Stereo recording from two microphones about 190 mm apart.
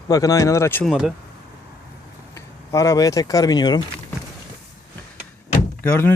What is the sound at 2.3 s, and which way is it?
Speech, 15° left (ahead or behind).